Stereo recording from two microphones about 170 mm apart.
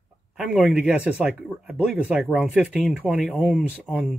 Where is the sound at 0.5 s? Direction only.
5° right (ahead or behind).